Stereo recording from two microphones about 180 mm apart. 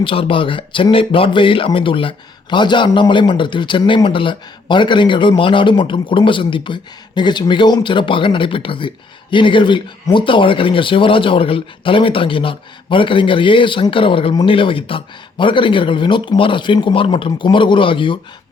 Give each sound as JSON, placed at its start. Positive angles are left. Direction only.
{"t": 0.0, "sound": "speech", "side_deg": 30}